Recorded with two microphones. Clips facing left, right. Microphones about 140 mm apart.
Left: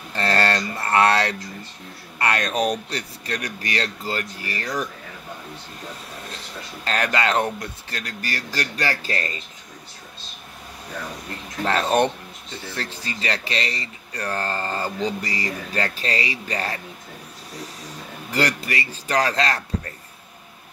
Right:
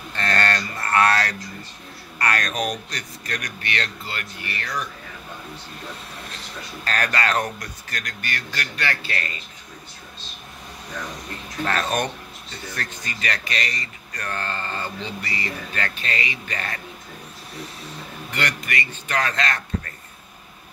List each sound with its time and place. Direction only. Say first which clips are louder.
0.1 s a sound: left 3 dB; 30° left (ahead or behind)
2.1 s speech: left 2 dB; 25° left (ahead or behind)
6.8 s speech: left 2 dB; 25° left (ahead or behind)
11.6 s a sound: left 4 dB; 25° left (ahead or behind)
12.6 s speech: left 2 dB; 30° left (ahead or behind)
18.3 s speech: left 4 dB; 35° left (ahead or behind)